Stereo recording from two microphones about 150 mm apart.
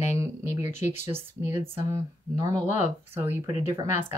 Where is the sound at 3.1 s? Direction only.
15° right (ahead or behind).